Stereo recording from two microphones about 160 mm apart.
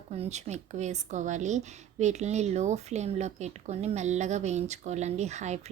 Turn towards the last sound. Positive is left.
turn(degrees=-45)  # may be behind; listen again after turning